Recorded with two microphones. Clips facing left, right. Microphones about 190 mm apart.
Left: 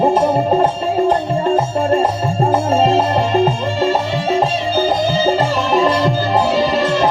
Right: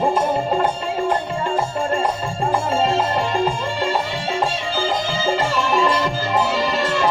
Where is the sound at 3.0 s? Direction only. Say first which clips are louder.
Left 5 dB; 25° left (ahead or behind).